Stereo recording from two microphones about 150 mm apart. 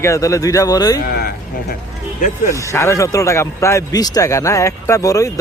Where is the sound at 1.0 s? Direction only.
90° left.